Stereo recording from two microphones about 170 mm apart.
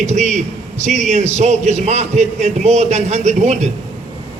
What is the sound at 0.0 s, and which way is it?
A man's voice, 45° right (ahead or behind).